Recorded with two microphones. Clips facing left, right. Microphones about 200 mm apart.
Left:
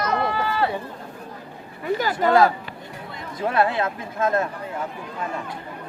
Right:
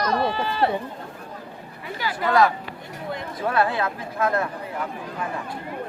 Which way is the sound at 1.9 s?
45° left (ahead or behind).